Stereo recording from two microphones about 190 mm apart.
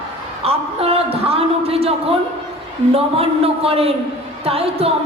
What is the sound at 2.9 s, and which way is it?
A woman's voice, 30° right (ahead or behind).